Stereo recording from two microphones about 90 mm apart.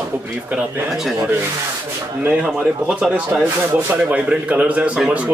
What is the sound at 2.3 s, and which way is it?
A man's voice, 10° right (ahead or behind).